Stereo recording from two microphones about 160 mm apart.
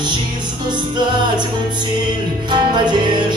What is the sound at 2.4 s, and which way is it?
Music, 30° right (ahead or behind).